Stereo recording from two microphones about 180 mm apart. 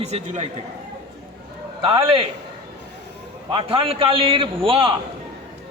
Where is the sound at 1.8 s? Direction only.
30° right (ahead or behind).